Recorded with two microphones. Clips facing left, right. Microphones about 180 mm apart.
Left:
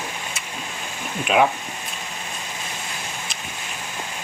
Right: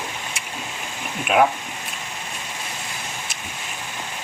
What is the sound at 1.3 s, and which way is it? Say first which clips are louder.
Speech: even; 5° right (ahead or behind).